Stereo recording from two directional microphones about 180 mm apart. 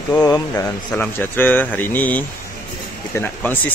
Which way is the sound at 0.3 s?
20° left (ahead or behind).